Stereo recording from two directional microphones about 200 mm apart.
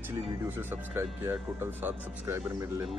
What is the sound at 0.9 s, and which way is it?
Speech, 10° right (ahead or behind).